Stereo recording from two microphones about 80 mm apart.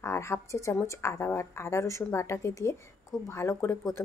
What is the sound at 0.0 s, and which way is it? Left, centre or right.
A woman's voice, left.